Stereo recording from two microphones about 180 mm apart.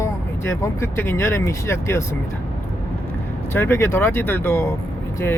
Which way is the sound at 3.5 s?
15° left (ahead or behind).